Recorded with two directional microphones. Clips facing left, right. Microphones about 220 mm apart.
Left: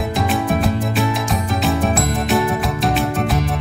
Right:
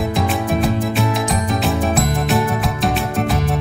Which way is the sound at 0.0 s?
Centre (ahead or behind).